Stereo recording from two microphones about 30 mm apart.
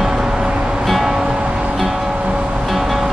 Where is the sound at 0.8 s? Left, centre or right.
Centre.